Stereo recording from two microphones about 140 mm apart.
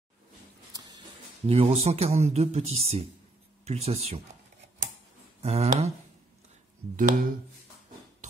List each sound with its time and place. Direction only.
0.7 s a sound: 30° right (ahead or behind)
1.5 s speech: 45° right (ahead or behind)
5.4 s speech: 50° right (ahead or behind)
7.0 s speech: 75° right (ahead or behind)